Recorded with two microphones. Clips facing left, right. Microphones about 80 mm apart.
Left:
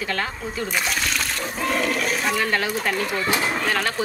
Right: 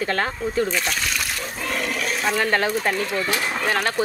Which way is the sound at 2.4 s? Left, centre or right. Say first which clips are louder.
Right 2 dB; right.